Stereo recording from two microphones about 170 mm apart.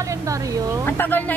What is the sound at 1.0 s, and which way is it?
Speech, 10° left (ahead or behind).